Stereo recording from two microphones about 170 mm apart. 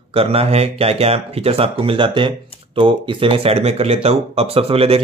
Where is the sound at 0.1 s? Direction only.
35° right (ahead or behind).